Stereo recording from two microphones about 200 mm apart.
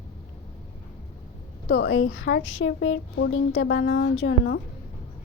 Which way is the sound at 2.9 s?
85° left.